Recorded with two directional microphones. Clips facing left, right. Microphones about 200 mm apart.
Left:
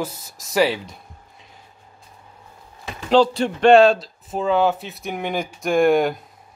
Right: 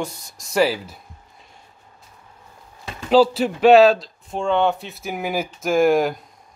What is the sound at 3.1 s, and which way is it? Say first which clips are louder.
Speech: right 1 dB; 5° right (ahead or behind).